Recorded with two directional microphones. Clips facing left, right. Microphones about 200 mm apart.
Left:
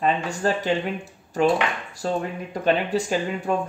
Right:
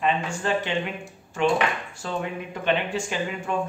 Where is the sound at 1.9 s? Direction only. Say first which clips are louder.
Left 4 dB; 40° left (ahead or behind).